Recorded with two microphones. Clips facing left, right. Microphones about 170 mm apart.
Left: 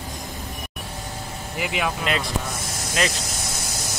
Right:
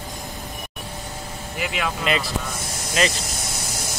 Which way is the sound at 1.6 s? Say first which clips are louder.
Left 1 dB; 15° left (ahead or behind).